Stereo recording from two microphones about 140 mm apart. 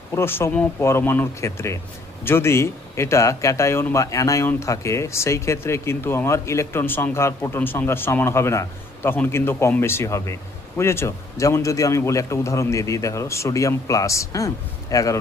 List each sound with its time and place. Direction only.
0.1 s speech: 15° left (ahead or behind)